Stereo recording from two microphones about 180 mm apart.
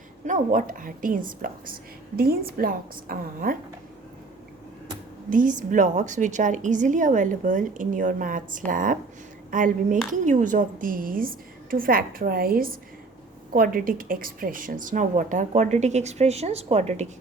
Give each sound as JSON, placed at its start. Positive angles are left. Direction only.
{"t": 0.3, "sound": "a woman's voice", "side_deg": -50}
{"t": 5.3, "sound": "a woman's voice", "side_deg": -45}